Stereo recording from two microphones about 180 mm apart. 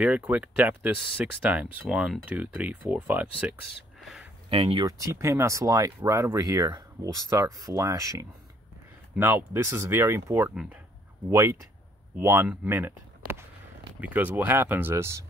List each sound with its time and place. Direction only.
0.0 s speech: 10° right (ahead or behind)
4.0 s a sound: centre (ahead or behind)
4.5 s speech: 30° right (ahead or behind)
4.8 s speech: 15° right (ahead or behind)